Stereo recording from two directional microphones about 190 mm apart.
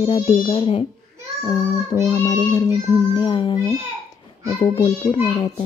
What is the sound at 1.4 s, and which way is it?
Speech, 20° left (ahead or behind).